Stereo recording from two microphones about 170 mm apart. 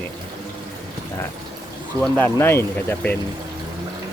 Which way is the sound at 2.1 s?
10° left (ahead or behind).